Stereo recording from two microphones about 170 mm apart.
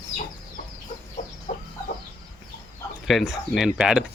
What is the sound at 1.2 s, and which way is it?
Chicken, 45° left (ahead or behind).